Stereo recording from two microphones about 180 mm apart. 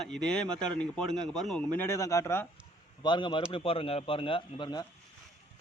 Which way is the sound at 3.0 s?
25° left (ahead or behind).